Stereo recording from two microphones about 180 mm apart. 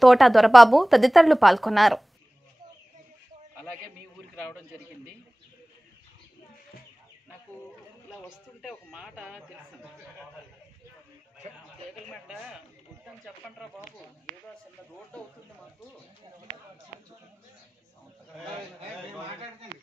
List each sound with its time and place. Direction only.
0.0 s a woman's voice: centre (ahead or behind)
4.4 s a man's voice: 5° left (ahead or behind)
8.3 s a sound: 5° right (ahead or behind)
11.9 s speech: centre (ahead or behind)
15.1 s a woman's voice: 5° left (ahead or behind)